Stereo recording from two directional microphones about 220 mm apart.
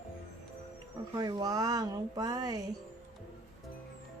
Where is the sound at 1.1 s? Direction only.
15° right (ahead or behind).